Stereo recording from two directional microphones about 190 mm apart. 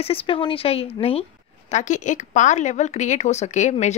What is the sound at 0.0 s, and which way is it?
Speech, 30° left (ahead or behind).